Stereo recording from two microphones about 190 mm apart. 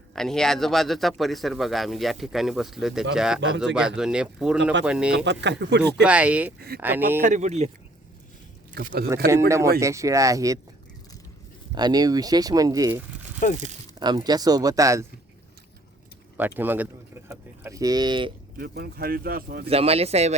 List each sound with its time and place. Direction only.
0.1 s a man's voice: centre (ahead or behind)
5.1 s speech: 65° right (ahead or behind)
5.8 s speech: 5° right (ahead or behind)
7.3 s speech: 40° right (ahead or behind)
8.7 s speech: 50° right (ahead or behind)
9.3 s speech: 15° right (ahead or behind)
11.7 s speech: 20° right (ahead or behind)
13.4 s speech: 45° left (ahead or behind)
14.0 s speech: 20° right (ahead or behind)
16.6 s a sound: 10° right (ahead or behind); by 18.3 s 25° right (ahead or behind)
18.5 s speech: 55° right (ahead or behind)
19.6 s speech: 30° right (ahead or behind)